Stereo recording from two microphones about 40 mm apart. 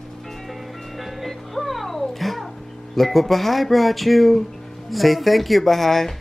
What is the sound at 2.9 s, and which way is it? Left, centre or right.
Speech, centre.